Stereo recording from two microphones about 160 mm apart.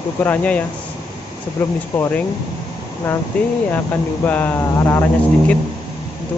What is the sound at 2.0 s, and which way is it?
Speech, 15° left (ahead or behind).